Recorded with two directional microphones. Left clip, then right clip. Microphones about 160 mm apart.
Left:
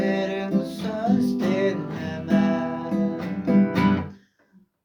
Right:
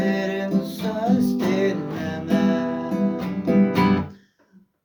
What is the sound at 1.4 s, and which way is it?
Music, 25° right (ahead or behind).